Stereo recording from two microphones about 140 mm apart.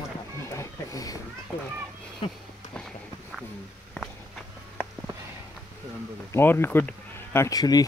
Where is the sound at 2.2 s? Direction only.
40° left (ahead or behind).